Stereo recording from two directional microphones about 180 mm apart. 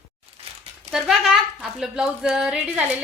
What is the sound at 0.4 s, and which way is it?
Crumpling, 30° right (ahead or behind).